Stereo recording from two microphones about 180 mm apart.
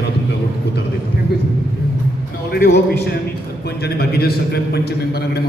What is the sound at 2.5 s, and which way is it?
A man's voice, 60° left (ahead or behind).